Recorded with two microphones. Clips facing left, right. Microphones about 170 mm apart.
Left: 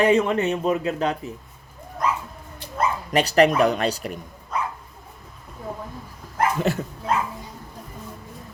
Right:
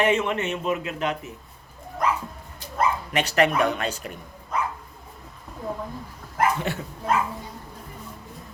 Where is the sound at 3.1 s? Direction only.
35° left (ahead or behind).